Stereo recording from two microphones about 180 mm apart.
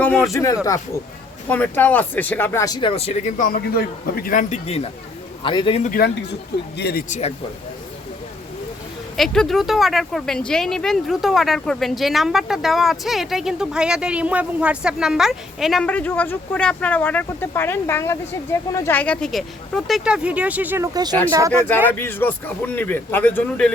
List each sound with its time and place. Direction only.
0.0 s a man's voice: 10° left (ahead or behind); by 5.8 s 25° left (ahead or behind)
5.8 s speech: 50° left (ahead or behind)
6.7 s speech: 65° left (ahead or behind)
7.1 s speech: 35° left (ahead or behind)
9.1 s speech: centre (ahead or behind); by 21.7 s 20° right (ahead or behind)
21.8 s a man's voice: 10° left (ahead or behind)